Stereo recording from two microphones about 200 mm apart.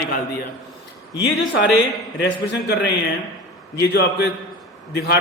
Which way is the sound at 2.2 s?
60° left (ahead or behind).